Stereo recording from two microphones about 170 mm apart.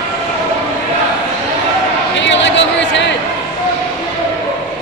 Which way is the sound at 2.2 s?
90° left.